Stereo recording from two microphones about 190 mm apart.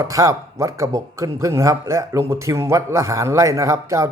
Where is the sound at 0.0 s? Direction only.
15° right (ahead or behind).